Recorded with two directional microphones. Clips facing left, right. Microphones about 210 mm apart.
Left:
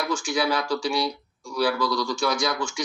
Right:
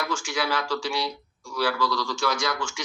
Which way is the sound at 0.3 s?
15° left (ahead or behind).